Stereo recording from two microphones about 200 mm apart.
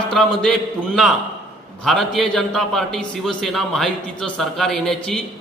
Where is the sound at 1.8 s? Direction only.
Centre (ahead or behind).